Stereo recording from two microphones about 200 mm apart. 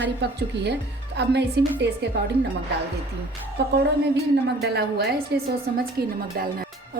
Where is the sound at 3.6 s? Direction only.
55° right (ahead or behind).